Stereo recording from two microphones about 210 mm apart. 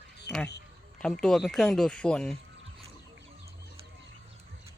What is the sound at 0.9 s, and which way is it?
Speech, 5° left (ahead or behind).